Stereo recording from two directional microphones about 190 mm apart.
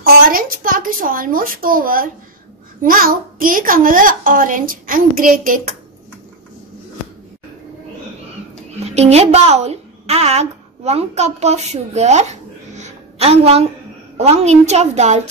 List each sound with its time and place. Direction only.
0.0 s a child's voice: 50° right (ahead or behind)
8.7 s a woman's voice: 35° right (ahead or behind)